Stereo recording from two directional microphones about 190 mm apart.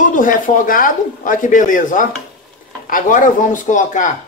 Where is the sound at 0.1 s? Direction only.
45° left (ahead or behind).